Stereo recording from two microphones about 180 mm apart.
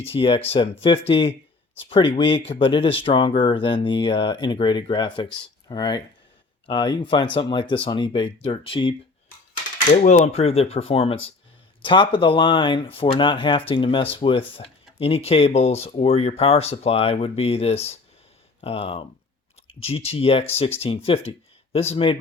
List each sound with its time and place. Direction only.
0.0 s speech: 30° left (ahead or behind)
9.7 s speech: 45° left (ahead or behind)